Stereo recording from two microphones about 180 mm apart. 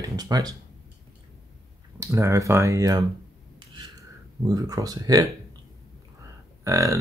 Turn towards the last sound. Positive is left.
turn(degrees=-15)  # may be behind; listen again after turning